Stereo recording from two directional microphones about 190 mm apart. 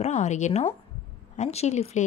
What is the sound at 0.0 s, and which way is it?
A woman's voice, 35° left (ahead or behind).